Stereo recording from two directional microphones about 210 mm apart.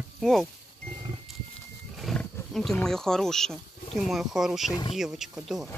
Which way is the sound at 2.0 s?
Centre (ahead or behind).